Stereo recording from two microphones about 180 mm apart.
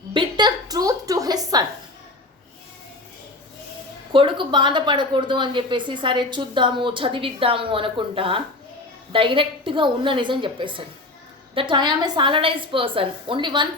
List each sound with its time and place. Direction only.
0.1 s a woman's voice: 25° right (ahead or behind)
4.1 s a woman's voice: 30° right (ahead or behind)